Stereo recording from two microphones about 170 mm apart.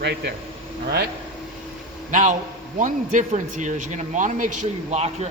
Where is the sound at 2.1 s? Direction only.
45° right (ahead or behind).